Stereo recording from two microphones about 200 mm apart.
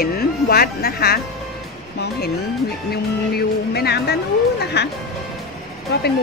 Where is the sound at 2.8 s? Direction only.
50° left (ahead or behind).